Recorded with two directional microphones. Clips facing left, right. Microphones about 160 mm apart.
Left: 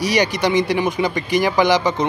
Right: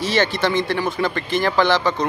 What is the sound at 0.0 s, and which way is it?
Speech, 15° left (ahead or behind).